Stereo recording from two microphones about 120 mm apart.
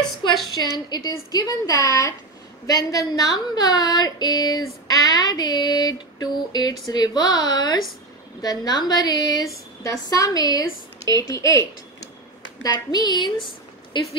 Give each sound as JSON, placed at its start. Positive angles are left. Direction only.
{"t": 0.8, "sound": "a woman's voice", "side_deg": 35}
{"t": 12.6, "sound": "speech", "side_deg": 35}